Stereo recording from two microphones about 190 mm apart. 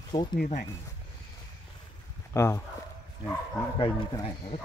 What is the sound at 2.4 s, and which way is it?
Speech, 15° left (ahead or behind).